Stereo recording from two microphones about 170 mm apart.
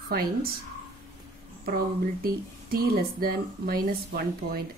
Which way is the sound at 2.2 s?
60° right (ahead or behind).